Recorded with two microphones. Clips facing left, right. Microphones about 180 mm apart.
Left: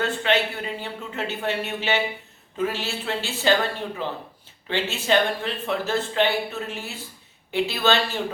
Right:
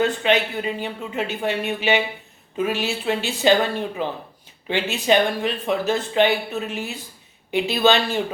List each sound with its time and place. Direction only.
0.0 s speech: 15° right (ahead or behind)